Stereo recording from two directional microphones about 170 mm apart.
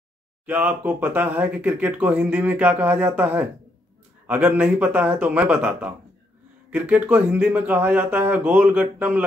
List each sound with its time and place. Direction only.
0.5 s speech: 10° right (ahead or behind)